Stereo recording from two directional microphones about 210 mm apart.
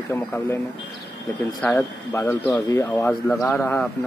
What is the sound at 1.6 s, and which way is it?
Speech, 10° left (ahead or behind).